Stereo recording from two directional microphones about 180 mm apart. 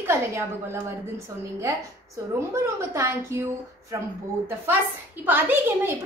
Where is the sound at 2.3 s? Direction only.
15° right (ahead or behind).